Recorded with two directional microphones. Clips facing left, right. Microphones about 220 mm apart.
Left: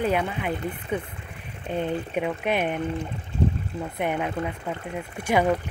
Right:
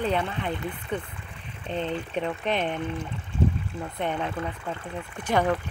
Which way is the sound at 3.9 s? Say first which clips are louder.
Left 2 dB; 10° left (ahead or behind).